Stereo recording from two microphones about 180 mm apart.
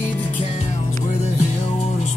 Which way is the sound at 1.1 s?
40° left (ahead or behind).